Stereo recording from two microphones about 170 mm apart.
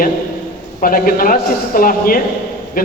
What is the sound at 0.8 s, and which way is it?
A man's voice, 55° left (ahead or behind).